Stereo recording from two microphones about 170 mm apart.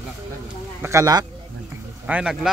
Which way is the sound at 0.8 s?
20° right (ahead or behind).